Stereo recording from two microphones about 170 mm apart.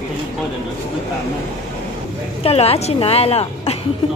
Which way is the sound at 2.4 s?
35° left (ahead or behind).